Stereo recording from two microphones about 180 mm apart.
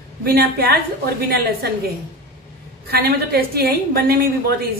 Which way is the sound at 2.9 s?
60° right (ahead or behind).